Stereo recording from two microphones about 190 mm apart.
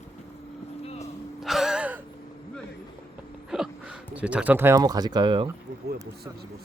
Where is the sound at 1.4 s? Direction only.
Centre (ahead or behind).